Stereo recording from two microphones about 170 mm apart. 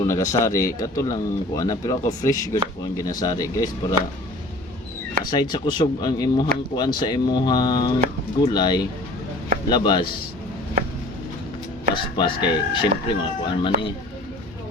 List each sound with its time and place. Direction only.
0.0 s speech: 20° left (ahead or behind)
5.2 s speech: 25° left (ahead or behind)
11.9 s speech: 30° left (ahead or behind)